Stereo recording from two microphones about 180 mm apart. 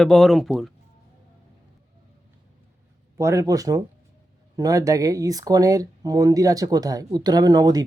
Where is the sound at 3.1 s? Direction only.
15° right (ahead or behind).